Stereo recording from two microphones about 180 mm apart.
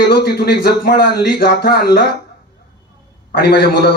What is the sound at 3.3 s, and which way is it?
Speech, 60° left (ahead or behind).